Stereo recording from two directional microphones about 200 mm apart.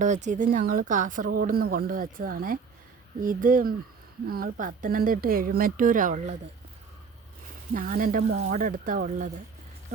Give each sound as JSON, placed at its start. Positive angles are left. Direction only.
{"t": 0.0, "sound": "speech", "side_deg": -35}
{"t": 7.7, "sound": "speech", "side_deg": -45}